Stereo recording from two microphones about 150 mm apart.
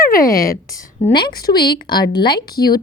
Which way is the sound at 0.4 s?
75° left (ahead or behind).